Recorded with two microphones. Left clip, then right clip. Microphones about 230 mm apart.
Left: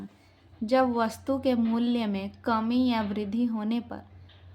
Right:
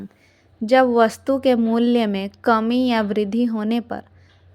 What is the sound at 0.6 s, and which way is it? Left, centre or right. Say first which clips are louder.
Speech: right 10 dB; right.